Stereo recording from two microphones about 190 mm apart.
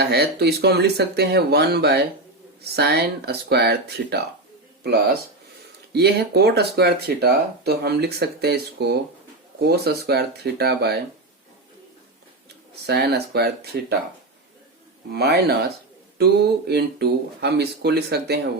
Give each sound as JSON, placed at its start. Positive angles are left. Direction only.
{"t": 0.0, "sound": "speech", "side_deg": -60}
{"t": 5.9, "sound": "speech", "side_deg": -60}
{"t": 12.8, "sound": "speech", "side_deg": -60}
{"t": 15.1, "sound": "speech", "side_deg": -55}